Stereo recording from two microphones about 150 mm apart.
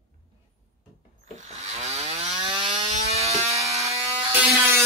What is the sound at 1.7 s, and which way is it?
Chainsaw, 50° right (ahead or behind).